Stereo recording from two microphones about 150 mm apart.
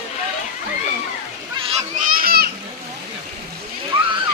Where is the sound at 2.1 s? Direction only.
85° right.